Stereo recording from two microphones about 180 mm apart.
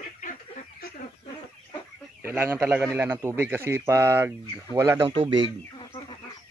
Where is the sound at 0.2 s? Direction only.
45° left (ahead or behind).